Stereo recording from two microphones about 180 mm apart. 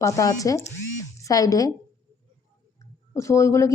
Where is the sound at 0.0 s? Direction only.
20° left (ahead or behind).